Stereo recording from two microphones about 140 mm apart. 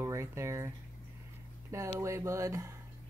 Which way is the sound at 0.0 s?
20° right (ahead or behind).